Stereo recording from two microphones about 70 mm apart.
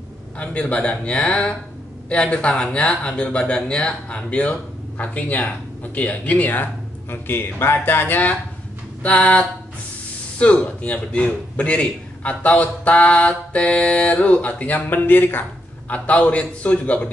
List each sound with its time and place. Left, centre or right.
0.4 s a man's voice: centre
10.4 s a man's voice: centre